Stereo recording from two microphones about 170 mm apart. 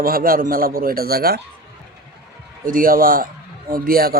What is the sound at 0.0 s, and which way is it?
Speech, 60° right (ahead or behind).